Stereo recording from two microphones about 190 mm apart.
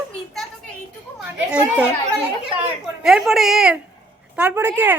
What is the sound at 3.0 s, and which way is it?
A woman's voice, centre (ahead or behind).